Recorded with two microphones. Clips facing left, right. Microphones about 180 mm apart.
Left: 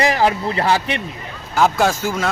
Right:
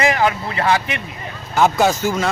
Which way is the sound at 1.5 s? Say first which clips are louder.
Right 1 dB; centre (ahead or behind).